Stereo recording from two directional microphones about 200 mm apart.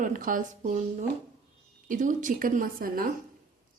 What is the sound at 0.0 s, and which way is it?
Speech, 45° right (ahead or behind).